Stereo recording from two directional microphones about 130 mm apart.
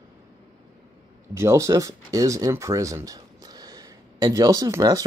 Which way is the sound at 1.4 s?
25° right (ahead or behind).